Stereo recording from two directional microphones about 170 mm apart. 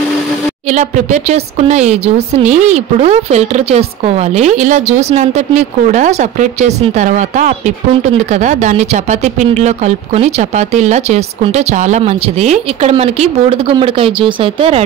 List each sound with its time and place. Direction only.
0.7 s speech: 45° right (ahead or behind)